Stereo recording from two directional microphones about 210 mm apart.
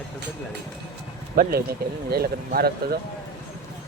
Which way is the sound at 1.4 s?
45° right (ahead or behind).